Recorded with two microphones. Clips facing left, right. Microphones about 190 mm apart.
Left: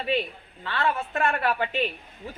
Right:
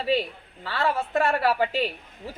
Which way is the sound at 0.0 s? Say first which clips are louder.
Right 2 dB; 35° right (ahead or behind).